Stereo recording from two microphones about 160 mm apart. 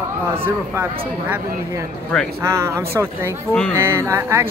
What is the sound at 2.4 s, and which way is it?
Speech, 20° right (ahead or behind).